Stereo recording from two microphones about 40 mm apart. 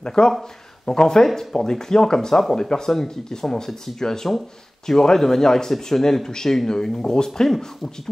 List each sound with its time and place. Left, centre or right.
0.0 s speech: centre